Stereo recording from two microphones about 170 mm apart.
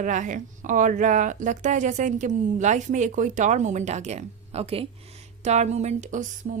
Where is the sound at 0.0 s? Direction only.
50° right (ahead or behind).